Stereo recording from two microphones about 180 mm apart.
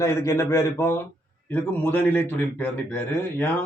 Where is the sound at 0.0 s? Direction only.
15° left (ahead or behind).